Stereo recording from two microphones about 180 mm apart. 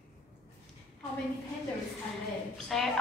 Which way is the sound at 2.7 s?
Centre (ahead or behind).